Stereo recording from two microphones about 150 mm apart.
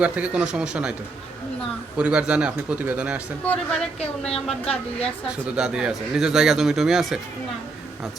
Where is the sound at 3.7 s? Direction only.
5° left (ahead or behind).